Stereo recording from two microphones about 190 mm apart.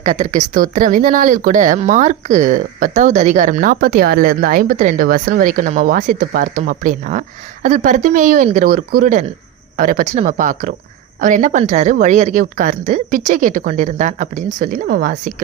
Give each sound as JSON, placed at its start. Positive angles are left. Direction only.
{"t": 0.0, "sound": "speech", "side_deg": -40}